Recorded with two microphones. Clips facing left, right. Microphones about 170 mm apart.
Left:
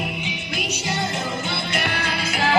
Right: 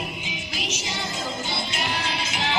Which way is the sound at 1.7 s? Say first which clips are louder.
Left 4 dB; 60° left (ahead or behind).